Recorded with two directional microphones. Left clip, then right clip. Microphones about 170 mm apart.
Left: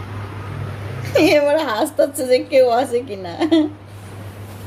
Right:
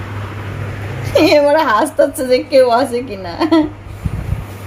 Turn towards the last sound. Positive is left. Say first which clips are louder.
# right 3 dB
turn(degrees=0)  # may be behind; listen again after turning